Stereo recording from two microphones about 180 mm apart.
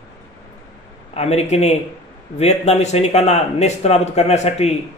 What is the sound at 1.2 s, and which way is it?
Speech, 35° left (ahead or behind).